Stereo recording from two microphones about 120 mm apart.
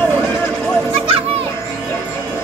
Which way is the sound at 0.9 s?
50° right (ahead or behind).